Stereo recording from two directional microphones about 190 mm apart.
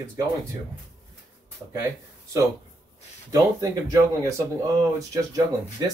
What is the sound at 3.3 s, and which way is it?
Speech, 20° right (ahead or behind).